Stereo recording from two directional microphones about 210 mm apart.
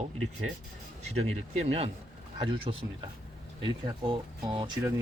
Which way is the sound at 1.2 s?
30° right (ahead or behind).